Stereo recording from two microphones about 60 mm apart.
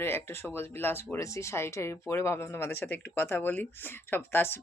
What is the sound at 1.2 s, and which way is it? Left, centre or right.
Speech, left.